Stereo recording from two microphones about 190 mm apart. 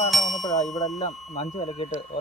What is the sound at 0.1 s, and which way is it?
Music, centre (ahead or behind).